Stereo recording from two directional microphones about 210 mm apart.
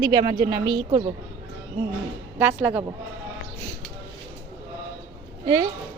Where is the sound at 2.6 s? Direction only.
5° right (ahead or behind).